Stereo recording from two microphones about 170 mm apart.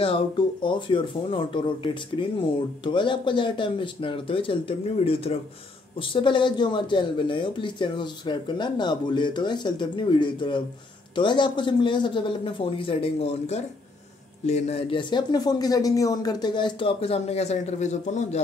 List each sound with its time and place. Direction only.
0.0 s speech: 30° left (ahead or behind)